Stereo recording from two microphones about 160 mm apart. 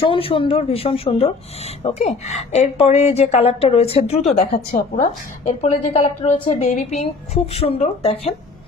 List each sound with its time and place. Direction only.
0.0 s a woman's voice: 35° left (ahead or behind)